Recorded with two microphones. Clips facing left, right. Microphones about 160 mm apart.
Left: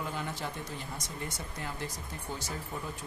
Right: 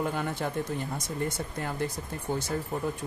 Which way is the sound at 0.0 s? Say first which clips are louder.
Right 7 dB; 55° right (ahead or behind).